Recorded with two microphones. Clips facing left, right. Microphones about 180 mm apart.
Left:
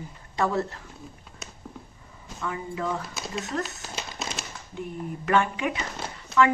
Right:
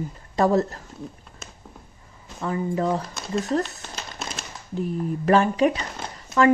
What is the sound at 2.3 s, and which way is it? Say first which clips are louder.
Speech: right 7 dB; 35° right (ahead or behind).